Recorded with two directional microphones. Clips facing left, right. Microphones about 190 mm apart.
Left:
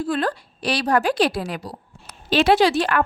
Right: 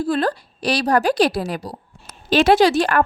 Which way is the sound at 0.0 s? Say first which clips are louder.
Right 3 dB; 35° right (ahead or behind).